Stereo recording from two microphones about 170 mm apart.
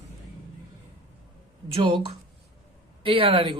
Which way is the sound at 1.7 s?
30° right (ahead or behind).